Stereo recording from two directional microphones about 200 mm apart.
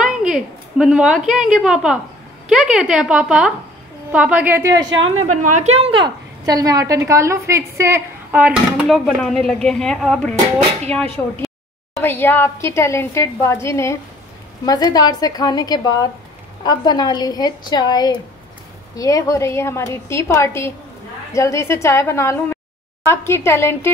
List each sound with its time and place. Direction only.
0.2 s a woman's voice: 5° right (ahead or behind)
4.8 s a woman's voice: 80° right
5.2 s a woman's voice: 35° right (ahead or behind); by 23.9 s 10° left (ahead or behind)